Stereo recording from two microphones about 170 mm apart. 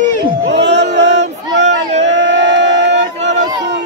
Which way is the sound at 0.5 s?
90° right.